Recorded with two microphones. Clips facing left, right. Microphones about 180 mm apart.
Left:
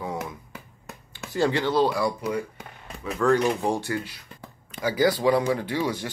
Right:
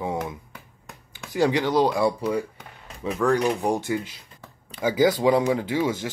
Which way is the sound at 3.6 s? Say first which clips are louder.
Right 2 dB; 15° right (ahead or behind).